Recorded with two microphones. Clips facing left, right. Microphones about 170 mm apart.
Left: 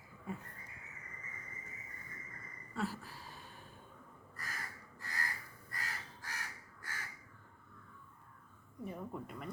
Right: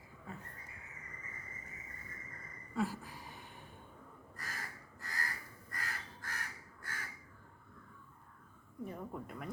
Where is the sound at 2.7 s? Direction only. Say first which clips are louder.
Right 3 dB; 15° right (ahead or behind).